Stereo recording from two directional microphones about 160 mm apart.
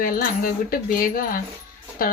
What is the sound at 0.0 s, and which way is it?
Speech, 60° left (ahead or behind).